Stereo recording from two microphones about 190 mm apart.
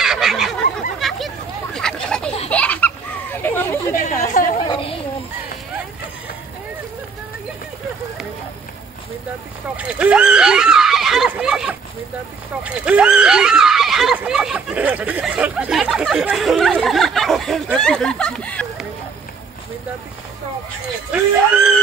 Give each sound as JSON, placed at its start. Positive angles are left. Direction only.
{"t": 0.0, "sound": "fowl", "side_deg": 0}
{"t": 0.9, "sound": "a sound", "side_deg": 0}
{"t": 3.9, "sound": "chatter", "side_deg": 45}
{"t": 4.6, "sound": "chatter", "side_deg": 30}
{"t": 9.8, "sound": "screaming", "side_deg": -5}
{"t": 12.6, "sound": "neigh", "side_deg": -5}
{"t": 21.1, "sound": "a sound", "side_deg": -5}